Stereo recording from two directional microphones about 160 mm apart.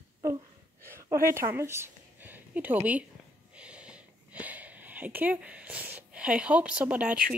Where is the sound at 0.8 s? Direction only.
15° right (ahead or behind).